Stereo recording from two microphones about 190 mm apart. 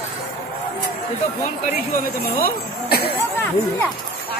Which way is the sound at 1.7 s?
45° left (ahead or behind).